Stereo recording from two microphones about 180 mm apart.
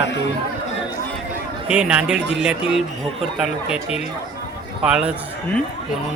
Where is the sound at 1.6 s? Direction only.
5° right (ahead or behind).